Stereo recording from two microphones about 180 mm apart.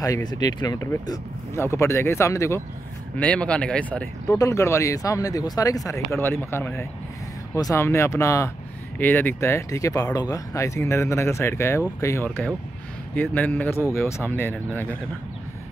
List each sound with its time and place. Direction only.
0.0 s speech: 20° left (ahead or behind)